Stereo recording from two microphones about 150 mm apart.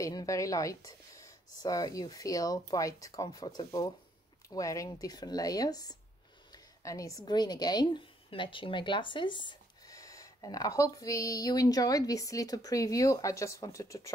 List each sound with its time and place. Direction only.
0.0 s a woman's voice: 25° left (ahead or behind)